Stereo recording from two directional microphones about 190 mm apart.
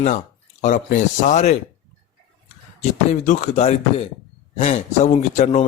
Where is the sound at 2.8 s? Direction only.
40° left (ahead or behind).